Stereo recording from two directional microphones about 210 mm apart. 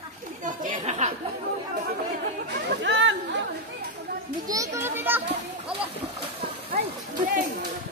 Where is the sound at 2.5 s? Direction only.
55° right (ahead or behind).